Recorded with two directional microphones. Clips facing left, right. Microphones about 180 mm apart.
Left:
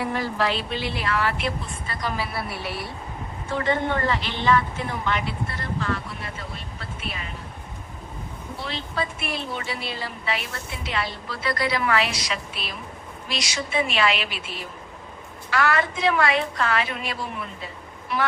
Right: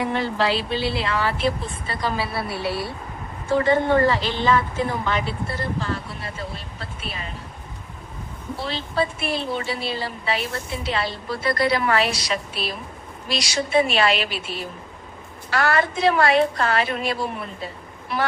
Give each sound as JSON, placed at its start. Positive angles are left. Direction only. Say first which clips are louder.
{"t": 0.0, "sound": "a woman's voice", "louder": "right 2 dB", "side_deg": -25}
{"t": 8.6, "sound": "a woman's voice", "louder": "right 5 dB", "side_deg": -30}
{"t": 11.4, "sound": "a woman's voice", "louder": "right 3 dB", "side_deg": -40}
{"t": 15.4, "sound": "a woman's voice", "louder": "right 2 dB", "side_deg": -35}